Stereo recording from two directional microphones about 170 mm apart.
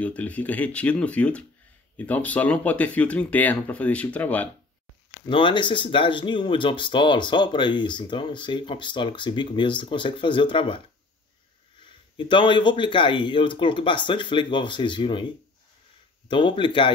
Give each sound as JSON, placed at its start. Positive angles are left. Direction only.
{"t": 0.0, "sound": "speech", "side_deg": 10}
{"t": 5.2, "sound": "speech", "side_deg": 30}
{"t": 11.8, "sound": "speech", "side_deg": 30}